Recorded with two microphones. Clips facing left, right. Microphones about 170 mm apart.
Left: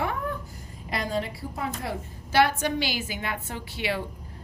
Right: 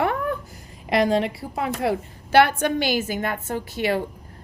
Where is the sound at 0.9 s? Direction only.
80° right.